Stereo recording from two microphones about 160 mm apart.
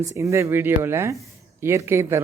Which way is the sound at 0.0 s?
20° right (ahead or behind).